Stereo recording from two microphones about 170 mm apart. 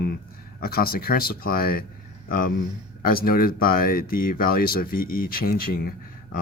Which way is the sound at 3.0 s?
60° left (ahead or behind).